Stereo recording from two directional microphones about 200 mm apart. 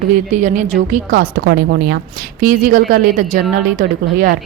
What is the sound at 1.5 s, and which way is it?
A woman's voice, 50° right (ahead or behind).